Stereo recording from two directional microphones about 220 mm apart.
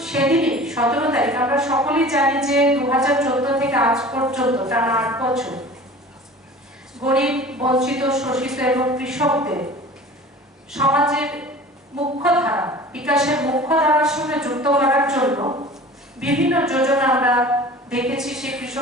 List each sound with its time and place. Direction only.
0.0 s a woman's voice: 5° right (ahead or behind)
7.0 s a woman's voice: 5° right (ahead or behind)
10.7 s a woman's voice: 5° right (ahead or behind)
15.4 s speech: 20° right (ahead or behind)
15.7 s a woman's voice: 5° right (ahead or behind)